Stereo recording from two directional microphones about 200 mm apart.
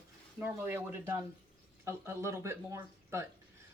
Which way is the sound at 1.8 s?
10° right (ahead or behind).